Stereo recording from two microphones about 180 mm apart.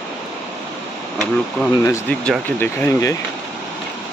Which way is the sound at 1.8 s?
15° left (ahead or behind).